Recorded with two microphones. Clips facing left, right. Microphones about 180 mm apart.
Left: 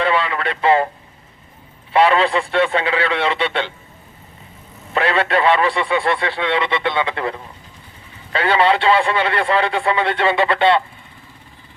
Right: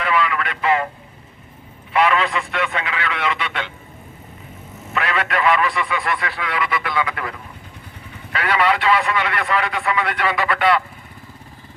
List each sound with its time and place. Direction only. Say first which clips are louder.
0.0 s speech: left 2 dB; 30° left (ahead or behind)
1.9 s a man's voice: left 4 dB; 30° left (ahead or behind)
4.9 s a man's voice: left 5 dB; 30° left (ahead or behind)